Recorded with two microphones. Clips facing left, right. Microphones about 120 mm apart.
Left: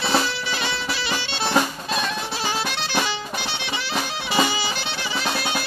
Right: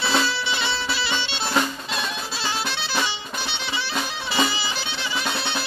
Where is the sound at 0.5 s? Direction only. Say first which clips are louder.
Even; 45° left (ahead or behind).